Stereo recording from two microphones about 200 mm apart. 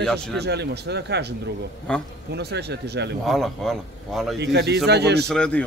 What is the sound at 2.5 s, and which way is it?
Speech, 55° right (ahead or behind).